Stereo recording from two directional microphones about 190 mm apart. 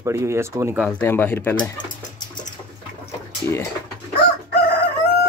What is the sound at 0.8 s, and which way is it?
Speech, 10° left (ahead or behind).